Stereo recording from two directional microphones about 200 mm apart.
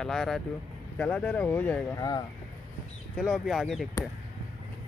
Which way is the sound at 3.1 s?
Centre (ahead or behind).